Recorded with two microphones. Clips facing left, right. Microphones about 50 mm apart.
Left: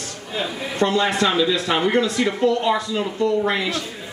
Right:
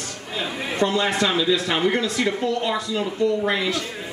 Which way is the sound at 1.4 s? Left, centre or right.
Centre.